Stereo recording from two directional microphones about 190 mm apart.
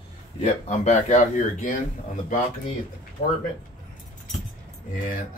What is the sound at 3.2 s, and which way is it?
Speech, 45° left (ahead or behind).